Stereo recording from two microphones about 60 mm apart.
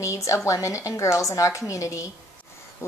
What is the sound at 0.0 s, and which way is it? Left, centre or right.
A woman's voice, left.